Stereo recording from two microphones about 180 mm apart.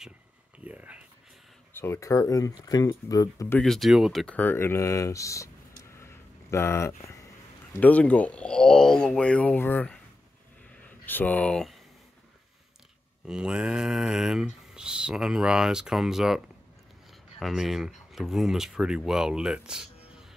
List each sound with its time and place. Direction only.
0.7 s a sound: 10° right (ahead or behind)
1.7 s speech: 15° left (ahead or behind)
3.6 s speech: centre (ahead or behind)
13.3 s speech: 5° right (ahead or behind)